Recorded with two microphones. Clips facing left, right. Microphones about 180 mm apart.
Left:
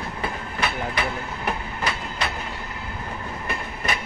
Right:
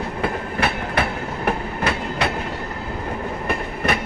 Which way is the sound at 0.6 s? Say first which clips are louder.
Right 3 dB; 55° right (ahead or behind).